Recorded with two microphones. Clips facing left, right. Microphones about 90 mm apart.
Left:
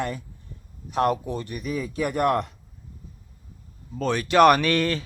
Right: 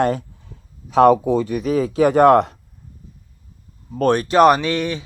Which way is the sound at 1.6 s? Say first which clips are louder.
Right 10 dB; 90° right.